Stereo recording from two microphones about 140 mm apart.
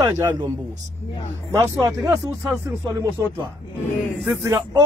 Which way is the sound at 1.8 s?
25° right (ahead or behind).